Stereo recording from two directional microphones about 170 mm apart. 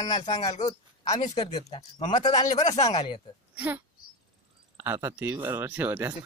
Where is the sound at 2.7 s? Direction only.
45° left (ahead or behind).